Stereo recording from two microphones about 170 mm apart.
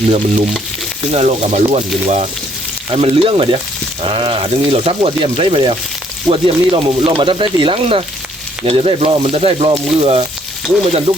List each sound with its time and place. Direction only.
1.1 s speech: 40° right (ahead or behind)